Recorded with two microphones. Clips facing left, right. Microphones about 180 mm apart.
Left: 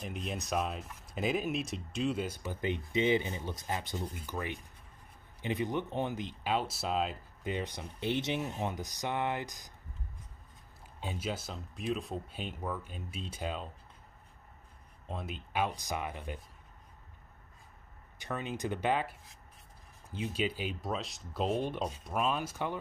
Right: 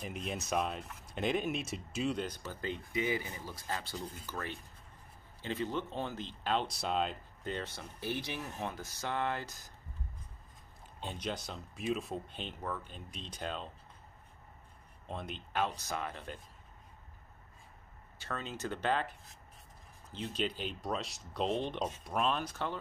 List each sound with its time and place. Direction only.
0.0 s speech: centre (ahead or behind); by 9.7 s 15° left (ahead or behind)
11.0 s speech: 5° left (ahead or behind)
15.0 s speech: 5° left (ahead or behind)
18.2 s speech: 15° left (ahead or behind)